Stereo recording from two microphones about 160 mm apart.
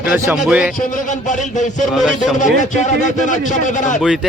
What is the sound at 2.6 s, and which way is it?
Speech, 50° left (ahead or behind).